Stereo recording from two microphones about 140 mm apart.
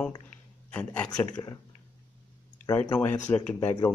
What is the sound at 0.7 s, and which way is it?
Speech, 10° left (ahead or behind).